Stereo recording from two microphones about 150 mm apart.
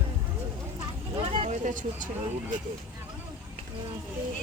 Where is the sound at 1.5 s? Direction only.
55° right (ahead or behind).